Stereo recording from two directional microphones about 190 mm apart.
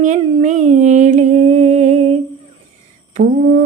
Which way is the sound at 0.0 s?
40° right (ahead or behind).